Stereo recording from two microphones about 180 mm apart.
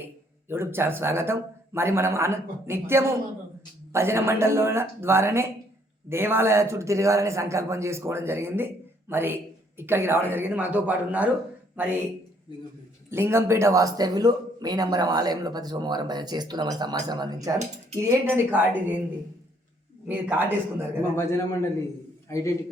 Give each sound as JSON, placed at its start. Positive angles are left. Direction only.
{"t": 0.0, "sound": "a man's voice", "side_deg": -15}
{"t": 13.1, "sound": "a man's voice", "side_deg": -15}
{"t": 20.1, "sound": "a man's voice", "side_deg": -10}
{"t": 21.2, "sound": "a man's voice", "side_deg": 15}